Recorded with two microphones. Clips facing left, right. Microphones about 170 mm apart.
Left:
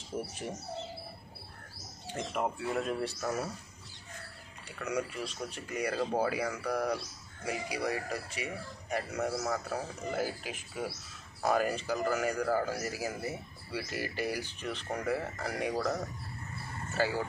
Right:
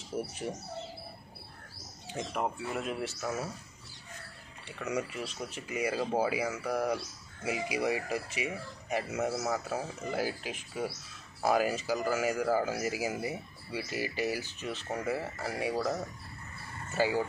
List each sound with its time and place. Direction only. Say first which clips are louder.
0.1 s speech: right 2 dB; 20° right (ahead or behind)
2.1 s a man's voice: even; centre (ahead or behind)
4.6 s a man's voice: even; centre (ahead or behind)